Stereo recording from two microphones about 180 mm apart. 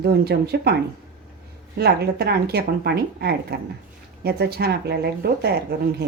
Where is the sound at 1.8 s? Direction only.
60° right (ahead or behind).